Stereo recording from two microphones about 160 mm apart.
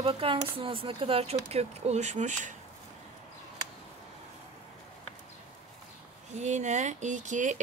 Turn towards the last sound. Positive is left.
turn(degrees=-50)  # may be behind; listen again after turning